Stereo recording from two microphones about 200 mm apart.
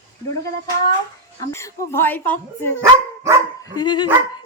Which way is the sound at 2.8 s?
15° right (ahead or behind).